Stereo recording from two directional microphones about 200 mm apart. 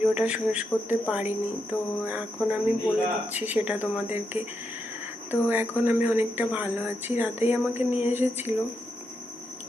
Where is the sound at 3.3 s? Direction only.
10° right (ahead or behind).